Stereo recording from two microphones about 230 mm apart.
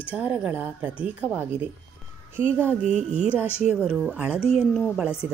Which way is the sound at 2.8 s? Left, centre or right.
Right.